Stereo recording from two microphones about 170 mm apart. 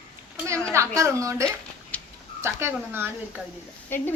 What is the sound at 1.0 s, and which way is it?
Speech, 15° right (ahead or behind).